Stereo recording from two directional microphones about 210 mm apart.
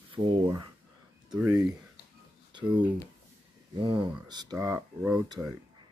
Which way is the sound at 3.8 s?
25° right (ahead or behind).